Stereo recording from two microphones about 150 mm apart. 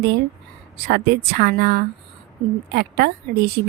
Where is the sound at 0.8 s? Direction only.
90° right.